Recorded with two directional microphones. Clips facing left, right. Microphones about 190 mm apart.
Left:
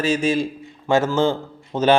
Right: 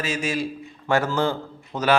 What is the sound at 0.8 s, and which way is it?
Speech, 20° left (ahead or behind).